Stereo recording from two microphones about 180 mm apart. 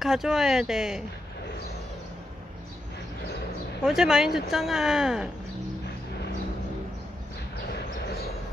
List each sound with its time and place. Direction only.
0.0 s speech: centre (ahead or behind)
3.8 s speech: 5° right (ahead or behind)